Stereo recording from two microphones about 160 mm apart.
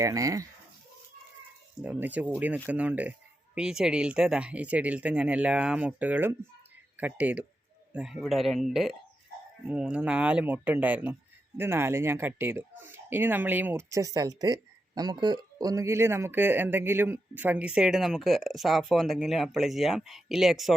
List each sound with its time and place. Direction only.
0.0 s speech: 20° right (ahead or behind)
1.8 s speech: 10° right (ahead or behind)